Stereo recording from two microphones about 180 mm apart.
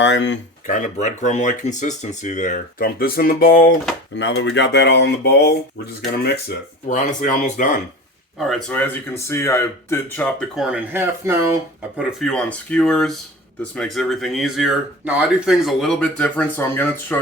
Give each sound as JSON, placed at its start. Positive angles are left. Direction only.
{"t": 0.0, "sound": "speech", "side_deg": 80}
{"t": 0.7, "sound": "speech", "side_deg": 45}
{"t": 4.2, "sound": "speech", "side_deg": 85}
{"t": 6.8, "sound": "speech", "side_deg": 45}
{"t": 8.4, "sound": "speech", "side_deg": 0}
{"t": 11.9, "sound": "speech", "side_deg": 5}